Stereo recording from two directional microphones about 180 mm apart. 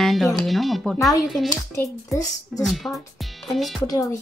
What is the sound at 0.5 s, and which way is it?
Speech, centre (ahead or behind).